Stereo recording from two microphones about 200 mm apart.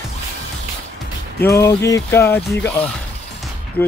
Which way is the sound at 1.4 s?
15° left (ahead or behind).